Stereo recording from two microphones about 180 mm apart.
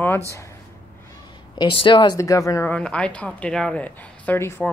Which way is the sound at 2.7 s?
5° left (ahead or behind).